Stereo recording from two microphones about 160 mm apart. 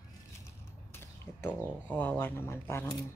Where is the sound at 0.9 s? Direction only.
10° left (ahead or behind).